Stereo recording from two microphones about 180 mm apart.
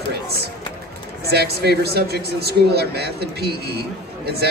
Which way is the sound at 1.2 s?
60° right (ahead or behind).